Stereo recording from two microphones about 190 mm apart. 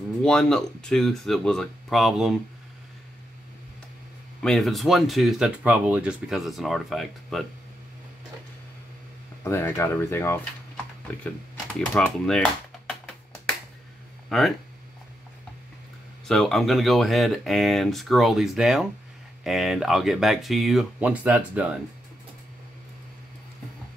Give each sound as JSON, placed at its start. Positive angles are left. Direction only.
{"t": 0.2, "sound": "speech", "side_deg": 5}
{"t": 4.4, "sound": "speech", "side_deg": 0}
{"t": 9.4, "sound": "speech", "side_deg": 15}
{"t": 11.9, "sound": "speech", "side_deg": 5}
{"t": 14.3, "sound": "speech", "side_deg": 0}
{"t": 16.3, "sound": "speech", "side_deg": 0}